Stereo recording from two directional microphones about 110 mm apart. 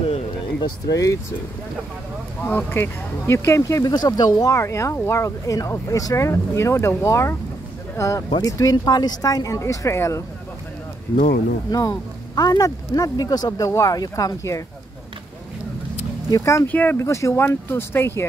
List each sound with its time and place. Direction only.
0.6 s speech: 35° left (ahead or behind)
2.4 s speech: 20° left (ahead or behind)
11.7 s speech: 35° left (ahead or behind)
16.3 s speech: 30° left (ahead or behind)
16.6 s speech: 15° left (ahead or behind)